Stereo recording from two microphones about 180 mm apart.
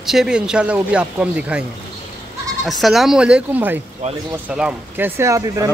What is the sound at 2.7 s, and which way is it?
Speech, centre (ahead or behind).